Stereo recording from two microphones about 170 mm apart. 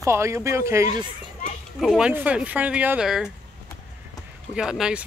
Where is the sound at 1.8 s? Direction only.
5° right (ahead or behind).